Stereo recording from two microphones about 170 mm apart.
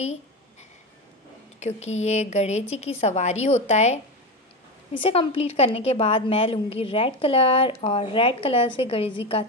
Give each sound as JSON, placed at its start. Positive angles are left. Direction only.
{"t": 1.6, "sound": "a woman's voice", "side_deg": 40}
{"t": 4.9, "sound": "a woman's voice", "side_deg": 30}